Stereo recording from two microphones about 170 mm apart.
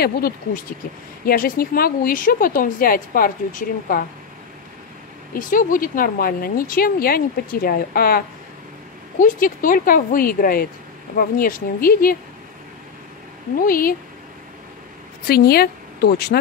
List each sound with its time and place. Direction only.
1.2 s speech: 55° left (ahead or behind)
5.3 s speech: 55° left (ahead or behind)
9.2 s speech: 55° left (ahead or behind)
13.7 s speech: 60° left (ahead or behind)
15.2 s speech: 65° left (ahead or behind)